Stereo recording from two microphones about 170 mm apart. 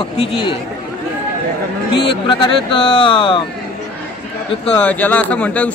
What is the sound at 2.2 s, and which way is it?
Speech, 30° left (ahead or behind).